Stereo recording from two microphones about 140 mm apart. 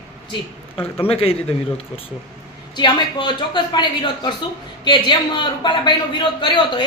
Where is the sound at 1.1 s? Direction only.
45° left (ahead or behind).